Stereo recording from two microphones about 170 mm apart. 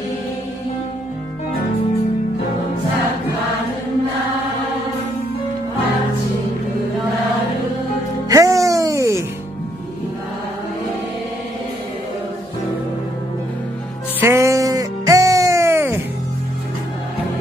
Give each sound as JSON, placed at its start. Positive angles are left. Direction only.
{"t": 8.3, "sound": "music", "side_deg": -20}
{"t": 14.2, "sound": "music", "side_deg": -15}